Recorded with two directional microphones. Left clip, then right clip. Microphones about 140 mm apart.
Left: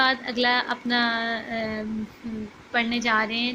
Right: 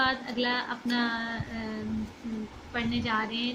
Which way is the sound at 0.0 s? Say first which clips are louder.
Left 6 dB; 50° left (ahead or behind).